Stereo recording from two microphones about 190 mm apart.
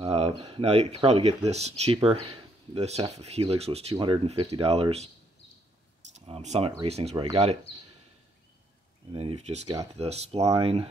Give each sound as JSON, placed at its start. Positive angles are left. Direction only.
{"t": 0.0, "sound": "speech", "side_deg": -30}
{"t": 6.1, "sound": "speech", "side_deg": -35}
{"t": 9.1, "sound": "speech", "side_deg": -30}